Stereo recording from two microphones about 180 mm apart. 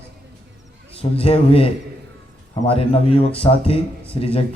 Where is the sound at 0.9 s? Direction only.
30° left (ahead or behind).